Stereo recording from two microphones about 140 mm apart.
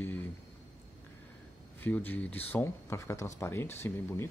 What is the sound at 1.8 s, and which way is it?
Speech, 10° left (ahead or behind).